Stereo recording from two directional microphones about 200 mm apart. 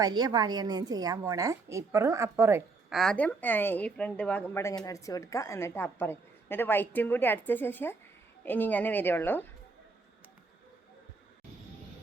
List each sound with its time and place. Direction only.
0.0 s a woman's voice: 20° right (ahead or behind)
2.9 s a woman's voice: centre (ahead or behind)